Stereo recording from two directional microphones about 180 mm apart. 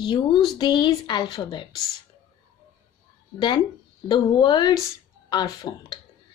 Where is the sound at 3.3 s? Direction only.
25° left (ahead or behind).